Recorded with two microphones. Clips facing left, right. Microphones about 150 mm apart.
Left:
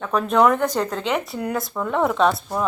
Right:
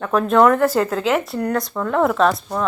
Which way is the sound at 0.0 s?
Centre (ahead or behind).